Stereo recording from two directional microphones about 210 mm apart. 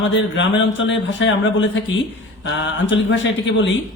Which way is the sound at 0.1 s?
65° left (ahead or behind).